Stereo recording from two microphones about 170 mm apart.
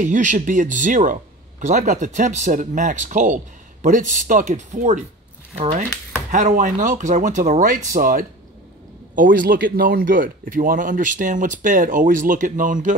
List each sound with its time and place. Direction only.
0.0 s a man's voice: 50° right (ahead or behind)
6.3 s a man's voice: 50° right (ahead or behind)